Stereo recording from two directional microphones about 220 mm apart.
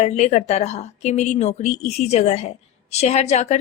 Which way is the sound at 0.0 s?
30° left (ahead or behind).